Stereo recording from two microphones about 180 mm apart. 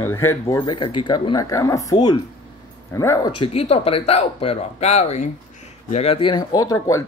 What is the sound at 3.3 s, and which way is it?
Speech, 30° left (ahead or behind).